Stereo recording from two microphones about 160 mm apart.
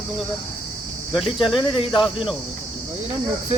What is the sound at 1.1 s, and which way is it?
Speech, centre (ahead or behind).